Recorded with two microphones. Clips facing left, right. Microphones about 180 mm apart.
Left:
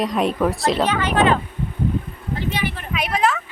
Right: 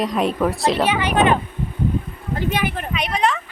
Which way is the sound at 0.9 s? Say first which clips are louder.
Right 1 dB; 15° right (ahead or behind).